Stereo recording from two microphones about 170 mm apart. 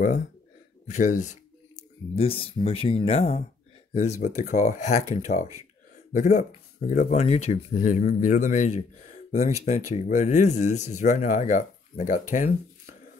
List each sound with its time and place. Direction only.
0.8 s speech: 45° left (ahead or behind)